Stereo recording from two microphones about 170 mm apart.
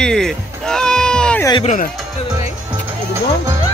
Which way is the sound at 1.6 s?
50° left (ahead or behind).